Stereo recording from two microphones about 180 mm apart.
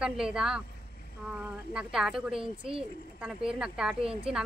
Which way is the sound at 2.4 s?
30° right (ahead or behind).